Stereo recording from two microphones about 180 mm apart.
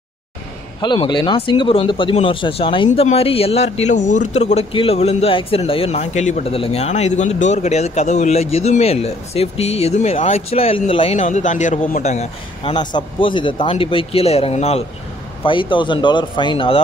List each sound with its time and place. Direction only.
0.7 s a man's voice: 25° left (ahead or behind)
12.7 s speech: 25° left (ahead or behind)